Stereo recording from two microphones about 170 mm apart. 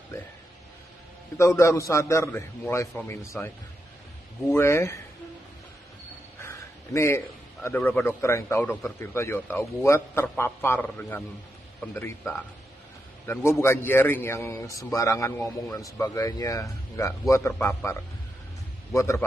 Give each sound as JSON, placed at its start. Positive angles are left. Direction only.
{"t": 1.4, "sound": "a man's voice", "side_deg": 15}
{"t": 6.4, "sound": "a sound", "side_deg": 15}
{"t": 7.6, "sound": "a man's voice", "side_deg": 10}